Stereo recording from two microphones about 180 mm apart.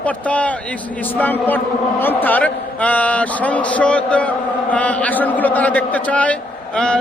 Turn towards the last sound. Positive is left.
turn(degrees=5)  # may be behind; listen again after turning